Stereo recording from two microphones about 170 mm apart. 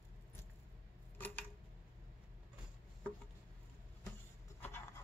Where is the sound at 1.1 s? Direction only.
10° left (ahead or behind).